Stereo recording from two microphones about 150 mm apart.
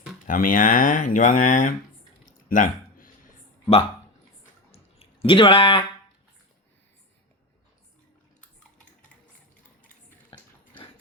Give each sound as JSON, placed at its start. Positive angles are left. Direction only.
{"t": 0.3, "sound": "speech", "side_deg": 65}
{"t": 2.2, "sound": "a sound", "side_deg": 60}
{"t": 4.9, "sound": "speech", "side_deg": 35}
{"t": 10.2, "sound": "dog", "side_deg": 30}